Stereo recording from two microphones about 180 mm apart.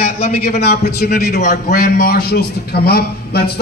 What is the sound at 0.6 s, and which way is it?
Speech, 60° left (ahead or behind).